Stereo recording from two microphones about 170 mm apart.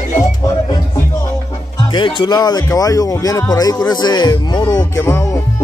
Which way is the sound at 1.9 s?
30° left (ahead or behind).